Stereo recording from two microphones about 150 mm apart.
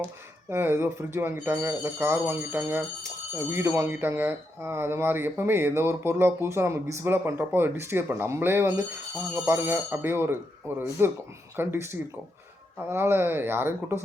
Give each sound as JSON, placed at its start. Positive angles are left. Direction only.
{"t": 0.5, "sound": "speech", "side_deg": -15}